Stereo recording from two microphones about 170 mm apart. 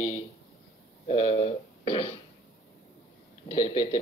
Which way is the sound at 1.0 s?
35° left (ahead or behind).